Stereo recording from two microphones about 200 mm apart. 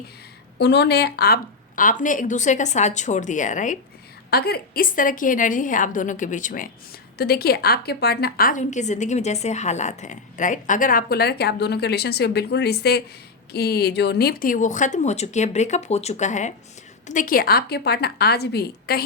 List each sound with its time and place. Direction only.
0.6 s a woman's voice: 55° left (ahead or behind); by 3.8 s 40° left (ahead or behind)
4.3 s a woman's voice: 50° left (ahead or behind)